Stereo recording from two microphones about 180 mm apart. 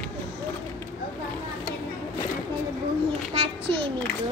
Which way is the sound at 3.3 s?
30° right (ahead or behind).